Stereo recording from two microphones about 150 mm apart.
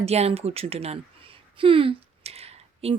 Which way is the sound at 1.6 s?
35° right (ahead or behind).